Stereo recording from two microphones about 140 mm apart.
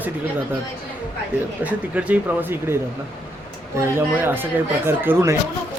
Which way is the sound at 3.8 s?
15° right (ahead or behind).